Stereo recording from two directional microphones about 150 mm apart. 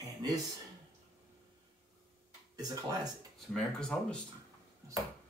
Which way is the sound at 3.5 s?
5° left (ahead or behind).